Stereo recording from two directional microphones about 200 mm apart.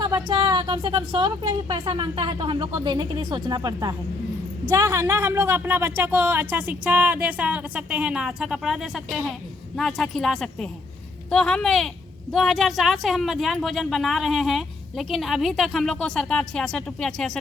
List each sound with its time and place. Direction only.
0.0 s a woman's voice: 20° right (ahead or behind); by 17.4 s 5° left (ahead or behind)